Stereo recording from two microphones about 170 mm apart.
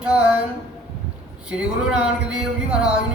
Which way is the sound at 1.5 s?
5° right (ahead or behind).